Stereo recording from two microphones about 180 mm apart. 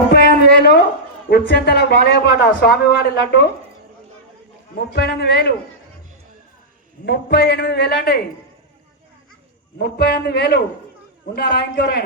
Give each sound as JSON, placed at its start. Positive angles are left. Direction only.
{"t": 0.1, "sound": "a sound", "side_deg": 65}
{"t": 1.3, "sound": "a man's voice", "side_deg": 65}
{"t": 4.9, "sound": "a man's voice", "side_deg": 65}
{"t": 7.0, "sound": "a man's voice", "side_deg": 65}
{"t": 9.7, "sound": "a man's voice", "side_deg": 60}